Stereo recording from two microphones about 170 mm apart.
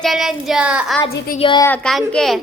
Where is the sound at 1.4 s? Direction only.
30° left (ahead or behind).